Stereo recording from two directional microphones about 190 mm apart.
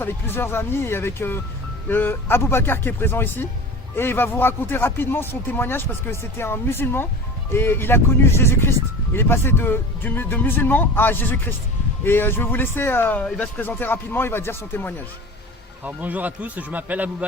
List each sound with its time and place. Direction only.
0.0 s speech: 10° left (ahead or behind)
15.8 s speech: 10° right (ahead or behind)